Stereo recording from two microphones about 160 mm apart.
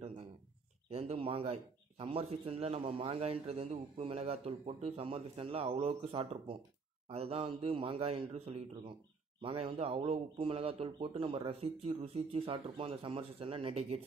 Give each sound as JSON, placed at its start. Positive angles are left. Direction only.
{"t": 0.8, "sound": "a man's voice", "side_deg": -40}